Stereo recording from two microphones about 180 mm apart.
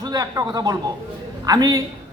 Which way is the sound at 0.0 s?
20° right (ahead or behind).